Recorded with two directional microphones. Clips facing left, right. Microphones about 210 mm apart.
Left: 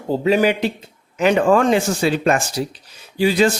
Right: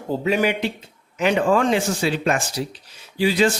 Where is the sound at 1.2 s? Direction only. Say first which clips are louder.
Left 4 dB; 45° left (ahead or behind).